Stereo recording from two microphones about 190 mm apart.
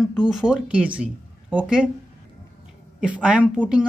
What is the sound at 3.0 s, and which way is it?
Speech, 5° right (ahead or behind).